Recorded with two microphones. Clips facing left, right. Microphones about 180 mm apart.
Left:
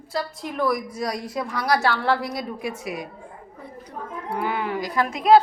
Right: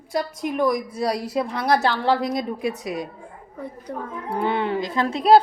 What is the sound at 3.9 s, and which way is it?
Speech, 55° right (ahead or behind).